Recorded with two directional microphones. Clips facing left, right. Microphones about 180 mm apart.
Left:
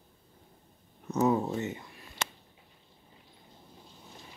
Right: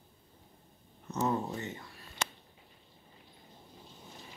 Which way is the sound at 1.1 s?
15° left (ahead or behind).